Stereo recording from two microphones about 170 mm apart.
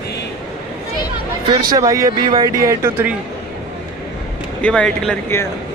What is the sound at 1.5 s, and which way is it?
Speech, 20° right (ahead or behind).